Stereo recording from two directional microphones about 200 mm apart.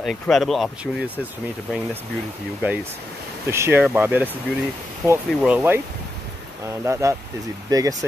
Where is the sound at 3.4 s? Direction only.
15° right (ahead or behind).